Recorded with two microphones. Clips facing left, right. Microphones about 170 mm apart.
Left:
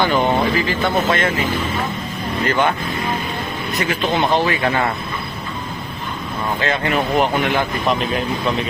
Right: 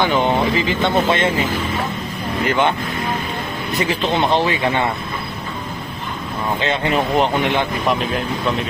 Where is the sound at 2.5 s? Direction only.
20° right (ahead or behind).